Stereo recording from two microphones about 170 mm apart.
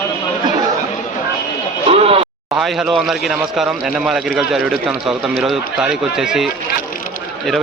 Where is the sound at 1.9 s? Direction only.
35° right (ahead or behind).